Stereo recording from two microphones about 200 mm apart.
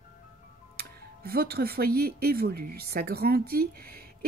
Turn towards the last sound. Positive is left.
turn(degrees=-50)  # may be behind; listen again after turning